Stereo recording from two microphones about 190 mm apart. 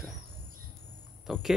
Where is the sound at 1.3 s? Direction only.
Centre (ahead or behind).